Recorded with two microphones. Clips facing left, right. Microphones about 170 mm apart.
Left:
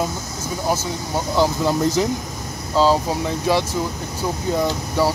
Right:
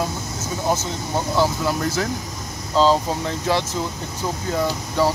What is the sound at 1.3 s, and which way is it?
Speech, 20° left (ahead or behind).